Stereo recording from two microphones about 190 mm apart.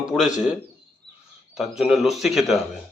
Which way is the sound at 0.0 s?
Centre (ahead or behind).